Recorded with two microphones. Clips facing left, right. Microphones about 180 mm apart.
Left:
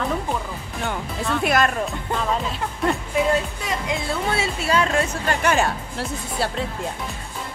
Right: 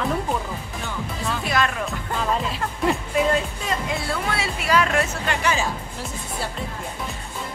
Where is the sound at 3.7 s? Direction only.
20° left (ahead or behind).